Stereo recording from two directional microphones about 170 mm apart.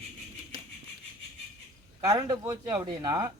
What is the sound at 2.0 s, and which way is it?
Speech, 20° right (ahead or behind).